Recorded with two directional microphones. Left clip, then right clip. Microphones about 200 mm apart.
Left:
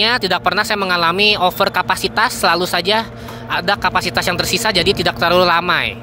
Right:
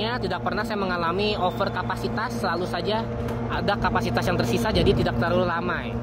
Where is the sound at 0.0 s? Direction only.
20° left (ahead or behind).